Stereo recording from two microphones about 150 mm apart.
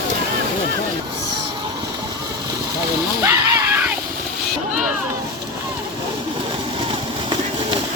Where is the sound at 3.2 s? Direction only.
20° right (ahead or behind).